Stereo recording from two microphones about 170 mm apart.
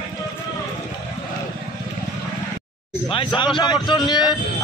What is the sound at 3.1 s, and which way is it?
A man's voice, 30° left (ahead or behind).